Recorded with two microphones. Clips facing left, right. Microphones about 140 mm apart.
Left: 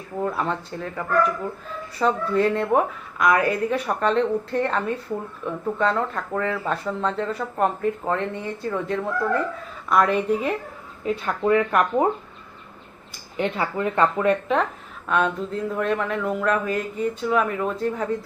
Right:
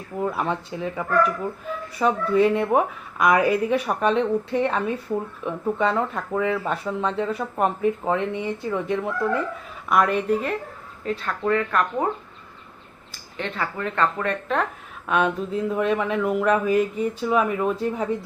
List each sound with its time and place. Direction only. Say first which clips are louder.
0.2 s speech: even; 10° right (ahead or behind)
2.0 s speech: right 2 dB; 10° right (ahead or behind)
9.9 s a woman's voice: even; centre (ahead or behind)
11.0 s a woman's voice: left 2 dB; 20° left (ahead or behind)
13.3 s a woman's voice: left 4 dB; 15° left (ahead or behind)
15.0 s speech: even; 10° right (ahead or behind)